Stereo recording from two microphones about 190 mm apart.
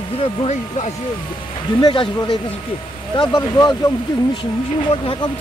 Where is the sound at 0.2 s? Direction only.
30° left (ahead or behind).